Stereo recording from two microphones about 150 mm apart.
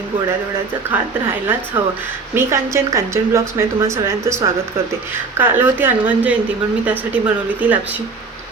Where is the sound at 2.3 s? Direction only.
20° right (ahead or behind).